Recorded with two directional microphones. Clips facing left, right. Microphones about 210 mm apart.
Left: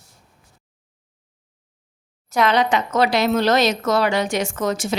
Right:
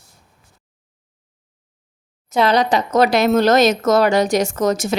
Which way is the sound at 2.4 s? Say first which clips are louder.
Right 2 dB; 35° right (ahead or behind).